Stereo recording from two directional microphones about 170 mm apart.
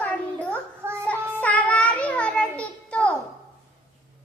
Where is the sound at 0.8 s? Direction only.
15° right (ahead or behind).